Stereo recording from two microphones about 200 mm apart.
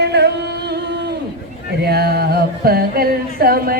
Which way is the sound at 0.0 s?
55° right (ahead or behind).